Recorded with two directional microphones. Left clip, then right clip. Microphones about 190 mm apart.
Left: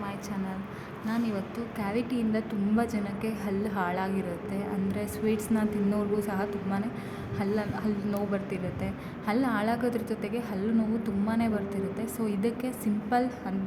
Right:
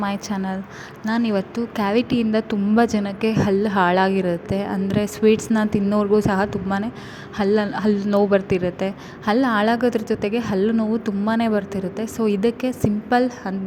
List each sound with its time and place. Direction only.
0.0 s a woman's voice: 45° right (ahead or behind)